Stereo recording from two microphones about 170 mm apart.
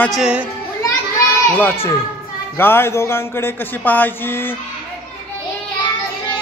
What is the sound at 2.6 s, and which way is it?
Speech, 15° left (ahead or behind).